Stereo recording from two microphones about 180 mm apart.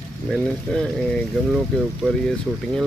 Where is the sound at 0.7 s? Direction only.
5° left (ahead or behind).